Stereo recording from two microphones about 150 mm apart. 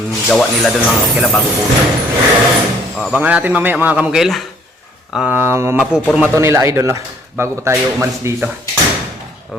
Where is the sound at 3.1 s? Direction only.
10° right (ahead or behind).